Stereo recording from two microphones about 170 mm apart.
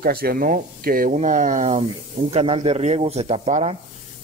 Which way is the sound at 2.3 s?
35° right (ahead or behind).